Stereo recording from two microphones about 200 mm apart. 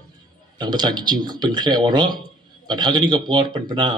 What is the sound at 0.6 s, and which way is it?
Speech, 20° right (ahead or behind).